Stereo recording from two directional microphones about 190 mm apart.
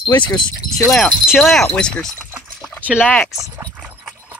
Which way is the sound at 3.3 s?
15° right (ahead or behind).